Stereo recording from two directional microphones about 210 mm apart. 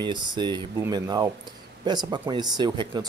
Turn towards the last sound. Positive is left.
turn(degrees=-20)  # may be behind; listen again after turning